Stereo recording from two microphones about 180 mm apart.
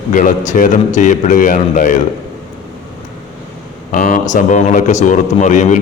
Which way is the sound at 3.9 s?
45° left (ahead or behind).